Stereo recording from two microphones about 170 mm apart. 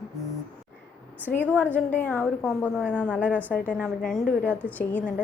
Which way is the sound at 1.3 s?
10° left (ahead or behind).